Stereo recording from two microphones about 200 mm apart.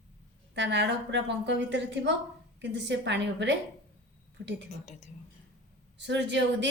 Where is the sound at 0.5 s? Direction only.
60° right (ahead or behind).